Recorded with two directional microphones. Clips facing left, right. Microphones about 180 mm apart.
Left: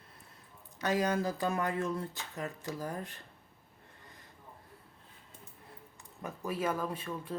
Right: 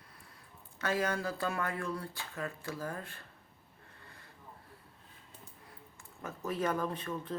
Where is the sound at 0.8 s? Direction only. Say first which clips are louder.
Left 3 dB; 15° left (ahead or behind).